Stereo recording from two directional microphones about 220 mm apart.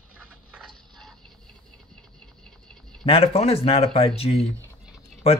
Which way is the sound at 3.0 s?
25° left (ahead or behind).